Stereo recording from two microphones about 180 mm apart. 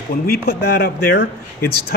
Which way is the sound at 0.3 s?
65° left (ahead or behind).